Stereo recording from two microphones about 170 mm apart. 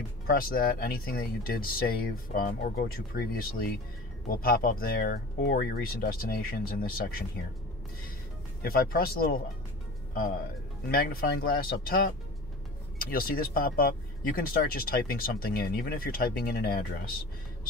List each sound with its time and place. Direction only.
0.3 s speech: 60° left (ahead or behind)
8.6 s speech: 60° left (ahead or behind)